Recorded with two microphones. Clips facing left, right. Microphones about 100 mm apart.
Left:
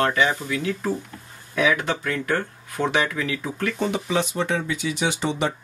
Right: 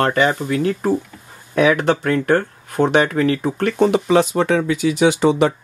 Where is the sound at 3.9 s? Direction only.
85° right.